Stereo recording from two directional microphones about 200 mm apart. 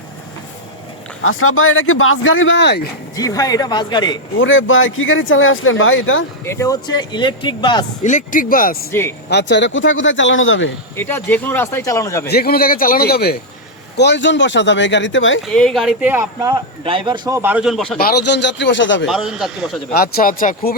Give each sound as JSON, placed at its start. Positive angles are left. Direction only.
{"t": 1.2, "sound": "speech", "side_deg": 90}
{"t": 3.2, "sound": "speech", "side_deg": 15}
{"t": 4.4, "sound": "speech", "side_deg": 75}
{"t": 6.4, "sound": "speech", "side_deg": 15}
{"t": 8.0, "sound": "a man's voice", "side_deg": 40}
{"t": 8.9, "sound": "speech", "side_deg": 10}
{"t": 9.3, "sound": "speech", "side_deg": 60}
{"t": 10.9, "sound": "speech", "side_deg": 10}
{"t": 12.3, "sound": "a man's voice", "side_deg": 50}
{"t": 15.5, "sound": "speech", "side_deg": 0}
{"t": 18.0, "sound": "speech", "side_deg": 55}
{"t": 19.0, "sound": "a man's voice", "side_deg": 0}
{"t": 19.9, "sound": "a man's voice", "side_deg": 45}